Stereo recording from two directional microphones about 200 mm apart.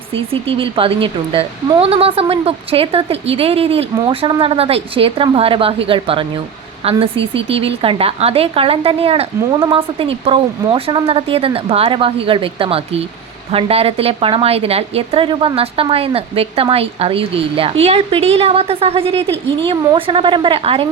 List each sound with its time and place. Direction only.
0.1 s speech: 30° right (ahead or behind)